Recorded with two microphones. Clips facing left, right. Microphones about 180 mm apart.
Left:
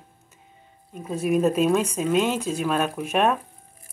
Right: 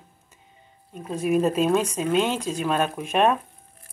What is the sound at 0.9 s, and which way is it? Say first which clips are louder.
Speech: even; 10° left (ahead or behind).